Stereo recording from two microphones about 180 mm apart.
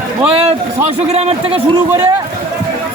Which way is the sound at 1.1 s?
35° right (ahead or behind).